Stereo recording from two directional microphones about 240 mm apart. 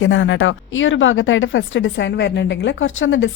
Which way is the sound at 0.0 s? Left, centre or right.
Left.